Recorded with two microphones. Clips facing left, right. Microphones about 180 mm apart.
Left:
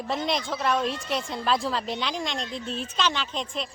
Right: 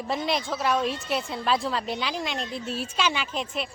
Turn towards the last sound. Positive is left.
turn(degrees=-10)  # may be behind; listen again after turning